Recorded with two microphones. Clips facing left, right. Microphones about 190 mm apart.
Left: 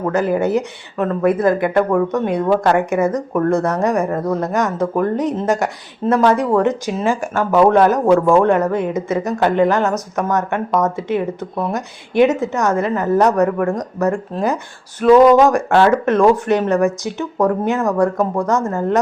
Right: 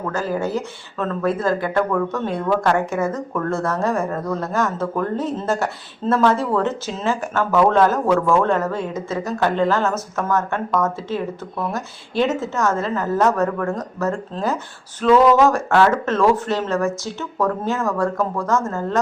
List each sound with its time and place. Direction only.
0.1 s speech: 20° left (ahead or behind)